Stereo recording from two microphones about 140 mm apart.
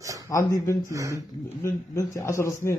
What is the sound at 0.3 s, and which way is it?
Speech, 20° left (ahead or behind).